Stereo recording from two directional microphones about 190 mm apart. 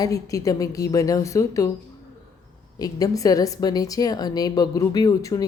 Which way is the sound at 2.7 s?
20° left (ahead or behind).